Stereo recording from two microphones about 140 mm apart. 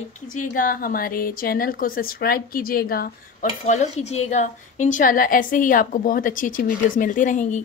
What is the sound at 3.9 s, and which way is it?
A woman's voice, 55° left (ahead or behind).